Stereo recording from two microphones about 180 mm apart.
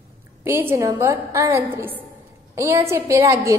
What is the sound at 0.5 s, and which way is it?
A woman's voice, 15° right (ahead or behind).